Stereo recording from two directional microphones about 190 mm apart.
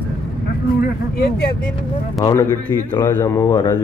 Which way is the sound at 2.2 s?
15° left (ahead or behind).